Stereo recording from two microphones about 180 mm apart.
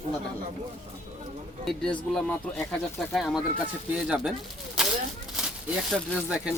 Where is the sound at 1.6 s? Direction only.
Centre (ahead or behind).